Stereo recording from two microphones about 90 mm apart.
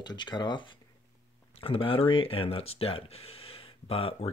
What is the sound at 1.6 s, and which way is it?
Speech, 75° left (ahead or behind).